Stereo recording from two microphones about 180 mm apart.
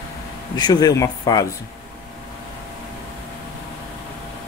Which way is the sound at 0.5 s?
20° left (ahead or behind).